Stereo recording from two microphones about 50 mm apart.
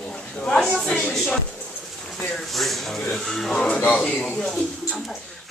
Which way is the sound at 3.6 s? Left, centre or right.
Left.